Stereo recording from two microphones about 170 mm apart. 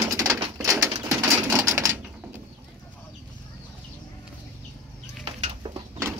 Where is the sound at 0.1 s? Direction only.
20° right (ahead or behind).